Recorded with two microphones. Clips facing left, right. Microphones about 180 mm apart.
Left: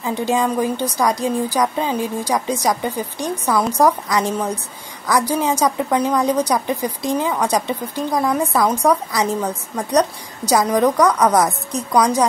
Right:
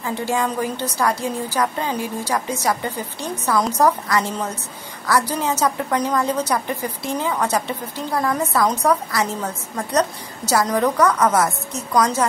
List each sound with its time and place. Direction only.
0.0 s a woman's voice: 15° left (ahead or behind)